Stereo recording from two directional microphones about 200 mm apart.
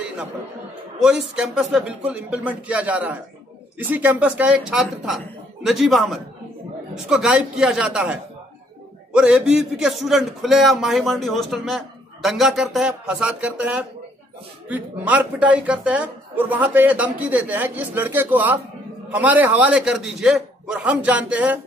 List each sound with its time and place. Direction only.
0.9 s a woman's voice: 5° right (ahead or behind)